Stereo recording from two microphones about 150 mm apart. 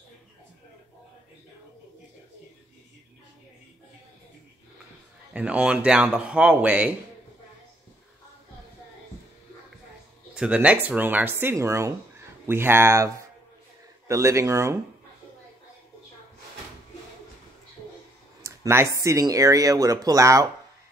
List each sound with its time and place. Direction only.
5.3 s a man's voice: 10° right (ahead or behind)
10.3 s a man's voice: 5° right (ahead or behind)
18.4 s speech: 20° right (ahead or behind)